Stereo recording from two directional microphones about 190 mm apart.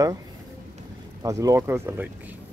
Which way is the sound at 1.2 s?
15° right (ahead or behind).